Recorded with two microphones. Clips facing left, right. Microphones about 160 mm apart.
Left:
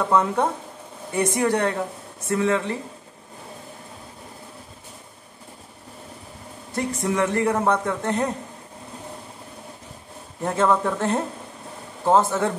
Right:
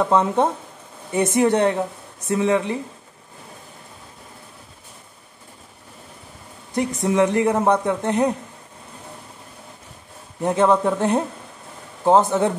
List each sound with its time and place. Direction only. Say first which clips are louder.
0.1 s speech: right 2 dB; 20° right (ahead or behind)
7.0 s speech: right 4 dB; 20° right (ahead or behind)
10.4 s speech: right 3 dB; 20° right (ahead or behind)